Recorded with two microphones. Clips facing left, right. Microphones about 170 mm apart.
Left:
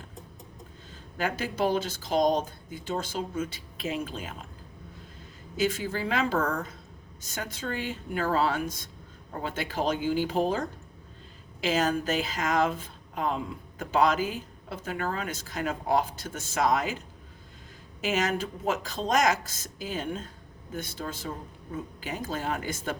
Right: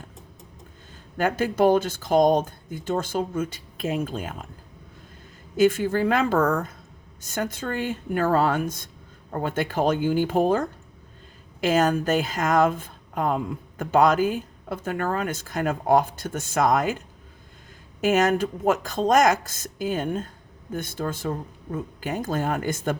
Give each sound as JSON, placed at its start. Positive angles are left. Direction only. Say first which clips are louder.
{"t": 1.2, "sound": "a woman's voice", "louder": "right 8 dB", "side_deg": -50}
{"t": 5.5, "sound": "a woman's voice", "louder": "right 9 dB", "side_deg": -55}
{"t": 18.0, "sound": "a woman's voice", "louder": "right 8 dB", "side_deg": -50}